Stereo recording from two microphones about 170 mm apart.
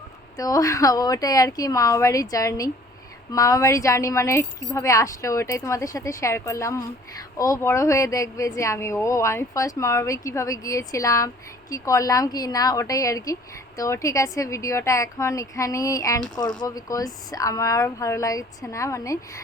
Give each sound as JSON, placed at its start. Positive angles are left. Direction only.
{"t": 0.3, "sound": "a woman's voice", "side_deg": 20}